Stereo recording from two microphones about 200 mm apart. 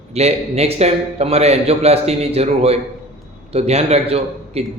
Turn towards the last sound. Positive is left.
turn(degrees=-30)  # may be behind; listen again after turning